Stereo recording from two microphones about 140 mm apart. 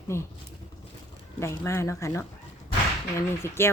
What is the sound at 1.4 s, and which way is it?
Speech, 20° left (ahead or behind).